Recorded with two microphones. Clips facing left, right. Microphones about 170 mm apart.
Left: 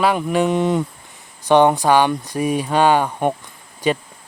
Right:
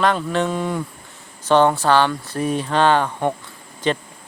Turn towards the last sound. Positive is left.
turn(degrees=10)  # may be behind; listen again after turning